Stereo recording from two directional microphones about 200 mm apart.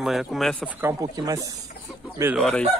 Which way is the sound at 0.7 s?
15° right (ahead or behind).